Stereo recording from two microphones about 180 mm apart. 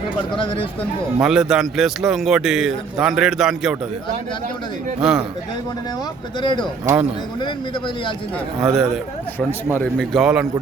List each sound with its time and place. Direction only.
0.3 s speech: 30° left (ahead or behind)
1.2 s a man's voice: 5° right (ahead or behind)
4.9 s a man's voice: 5° right (ahead or behind)
6.4 s speech: 25° left (ahead or behind)
8.6 s a man's voice: 5° right (ahead or behind)